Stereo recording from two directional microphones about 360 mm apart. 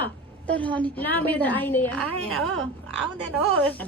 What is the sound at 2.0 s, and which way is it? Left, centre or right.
Speech, right.